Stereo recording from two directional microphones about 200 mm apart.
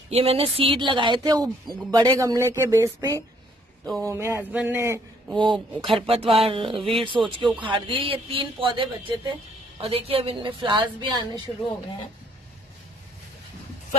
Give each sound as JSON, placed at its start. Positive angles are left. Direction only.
{"t": 0.1, "sound": "a man's voice", "side_deg": -30}